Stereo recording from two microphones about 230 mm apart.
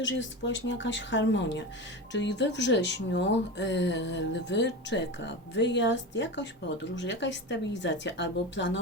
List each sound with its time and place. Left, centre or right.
0.0 s speech: left